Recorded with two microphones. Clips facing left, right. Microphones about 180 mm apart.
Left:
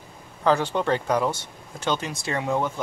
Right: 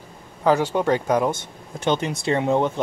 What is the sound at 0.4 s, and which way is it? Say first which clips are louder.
Speech: right 3 dB; 10° right (ahead or behind).